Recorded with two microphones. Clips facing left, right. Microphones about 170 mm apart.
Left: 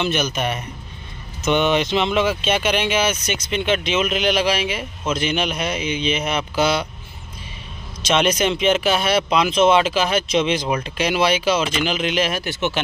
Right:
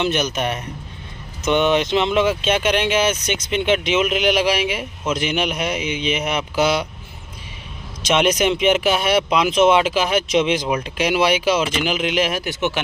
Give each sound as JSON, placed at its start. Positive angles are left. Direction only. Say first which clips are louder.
{"t": 0.0, "sound": "speech", "louder": "right 1 dB", "side_deg": -15}
{"t": 1.4, "sound": "speech", "louder": "right 1 dB", "side_deg": 0}
{"t": 3.3, "sound": "speech", "louder": "right 2 dB", "side_deg": -20}
{"t": 8.0, "sound": "speech", "louder": "right 1 dB", "side_deg": -15}